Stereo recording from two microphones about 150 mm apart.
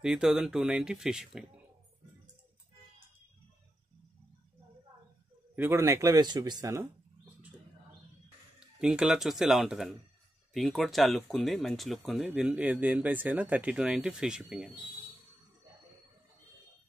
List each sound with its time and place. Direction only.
0.0 s speech: 5° right (ahead or behind)
5.6 s speech: 20° right (ahead or behind)
8.5 s speech: 5° right (ahead or behind)